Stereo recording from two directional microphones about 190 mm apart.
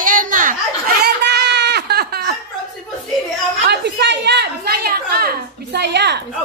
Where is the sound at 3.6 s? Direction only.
65° right (ahead or behind).